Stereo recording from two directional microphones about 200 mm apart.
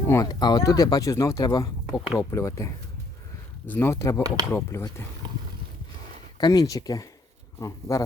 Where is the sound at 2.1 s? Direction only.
15° left (ahead or behind).